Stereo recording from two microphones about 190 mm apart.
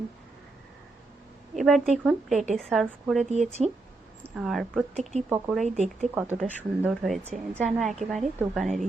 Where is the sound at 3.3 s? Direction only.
35° right (ahead or behind).